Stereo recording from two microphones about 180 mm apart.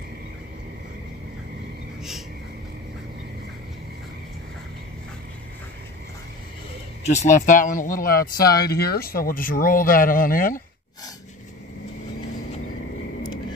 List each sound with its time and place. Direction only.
7.0 s speech: 40° left (ahead or behind)